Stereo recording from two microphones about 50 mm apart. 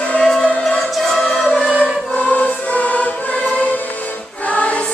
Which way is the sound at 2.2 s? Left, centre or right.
Left.